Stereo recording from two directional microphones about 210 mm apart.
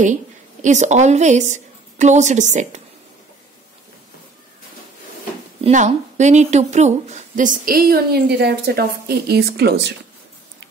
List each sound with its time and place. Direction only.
0.0 s a woman's voice: 35° right (ahead or behind)
5.6 s speech: 35° right (ahead or behind); by 9.9 s 55° right (ahead or behind)